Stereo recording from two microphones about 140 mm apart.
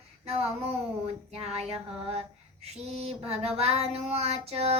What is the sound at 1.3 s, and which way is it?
Speech, 45° right (ahead or behind).